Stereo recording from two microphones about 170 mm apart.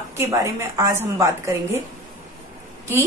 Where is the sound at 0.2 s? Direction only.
20° right (ahead or behind).